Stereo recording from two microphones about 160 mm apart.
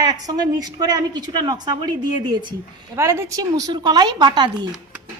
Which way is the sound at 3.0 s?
15° right (ahead or behind).